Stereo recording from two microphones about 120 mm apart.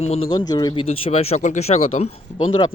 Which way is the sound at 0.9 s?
55° left (ahead or behind).